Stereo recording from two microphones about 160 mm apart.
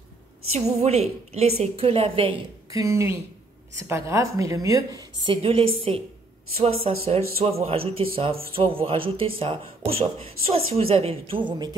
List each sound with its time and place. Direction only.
0.7 s speech: 40° right (ahead or behind)
2.7 s a woman's voice: 20° right (ahead or behind); by 11.4 s 35° right (ahead or behind)